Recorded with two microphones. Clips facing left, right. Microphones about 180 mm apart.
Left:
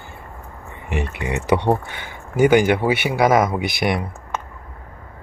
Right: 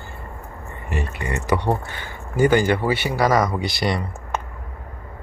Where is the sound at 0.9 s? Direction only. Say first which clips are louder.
Left 3 dB; 20° left (ahead or behind).